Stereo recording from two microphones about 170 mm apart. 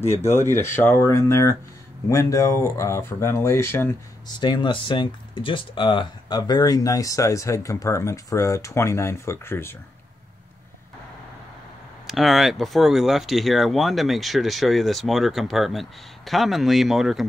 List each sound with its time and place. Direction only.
0.3 s speech: 15° left (ahead or behind)
4.4 s speech: 25° left (ahead or behind)
12.1 s speech: centre (ahead or behind)